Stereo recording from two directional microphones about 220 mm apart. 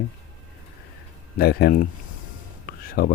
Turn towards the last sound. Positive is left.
turn(degrees=40)  # may be behind; listen again after turning